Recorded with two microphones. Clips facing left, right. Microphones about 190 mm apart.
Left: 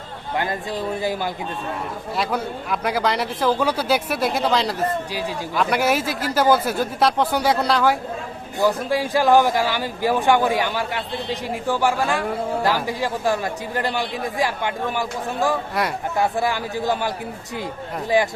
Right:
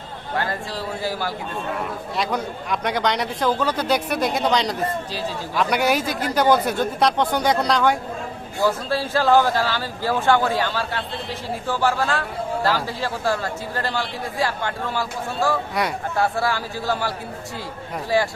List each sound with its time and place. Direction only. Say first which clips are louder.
0.3 s speech: left 2 dB; 20° left (ahead or behind)
2.1 s a man's voice: left 1 dB; 5° left (ahead or behind)
8.6 s a man's voice: left 2 dB; 15° left (ahead or behind)
15.8 s a man's voice: even; centre (ahead or behind)
16.1 s a man's voice: left 1 dB; 15° left (ahead or behind)
18.1 s a man's voice: left 2 dB; 20° left (ahead or behind)